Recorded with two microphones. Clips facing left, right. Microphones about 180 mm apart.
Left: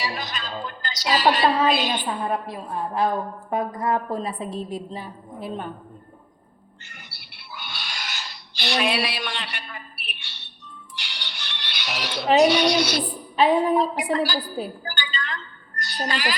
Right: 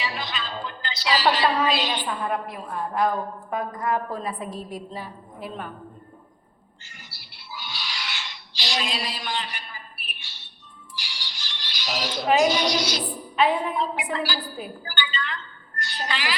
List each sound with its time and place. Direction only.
0.0 s a woman's voice: 45° left (ahead or behind)
2.2 s a woman's voice: 25° left (ahead or behind)
7.1 s a sound: 60° left (ahead or behind); by 8.4 s 40° left (ahead or behind)
8.5 s a sound: 60° left (ahead or behind)
10.9 s music: 65° left (ahead or behind)
12.4 s a woman's voice: 65° left (ahead or behind)
13.3 s a woman's voice: 35° left (ahead or behind)